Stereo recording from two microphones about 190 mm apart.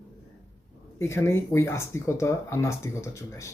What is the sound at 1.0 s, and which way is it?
Speech, 15° left (ahead or behind).